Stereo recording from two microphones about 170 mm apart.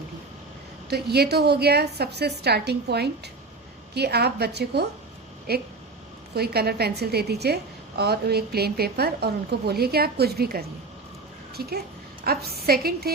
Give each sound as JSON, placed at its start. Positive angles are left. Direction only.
{"t": 0.9, "sound": "a woman's voice", "side_deg": -70}